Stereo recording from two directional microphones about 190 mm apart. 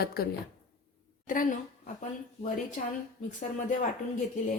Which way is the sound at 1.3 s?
45° left (ahead or behind).